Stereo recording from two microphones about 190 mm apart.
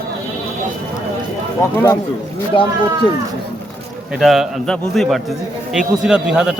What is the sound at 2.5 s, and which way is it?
Speech, 25° left (ahead or behind).